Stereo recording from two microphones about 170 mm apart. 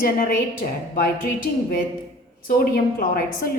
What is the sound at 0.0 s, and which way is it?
A woman's voice, 60° left (ahead or behind).